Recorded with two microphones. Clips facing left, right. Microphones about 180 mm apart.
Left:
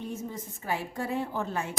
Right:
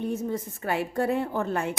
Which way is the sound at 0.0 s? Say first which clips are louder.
Right 7 dB; 65° right (ahead or behind).